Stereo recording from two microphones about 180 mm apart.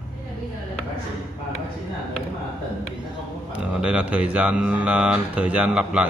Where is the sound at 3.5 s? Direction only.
5° right (ahead or behind).